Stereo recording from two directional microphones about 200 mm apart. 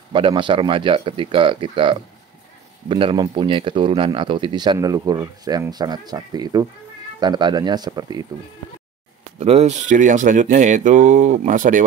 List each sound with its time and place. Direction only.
0.1 s speech: 25° right (ahead or behind)
9.4 s speech: 30° right (ahead or behind)